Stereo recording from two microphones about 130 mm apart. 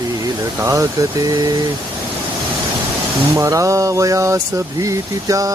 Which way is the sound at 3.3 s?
25° right (ahead or behind).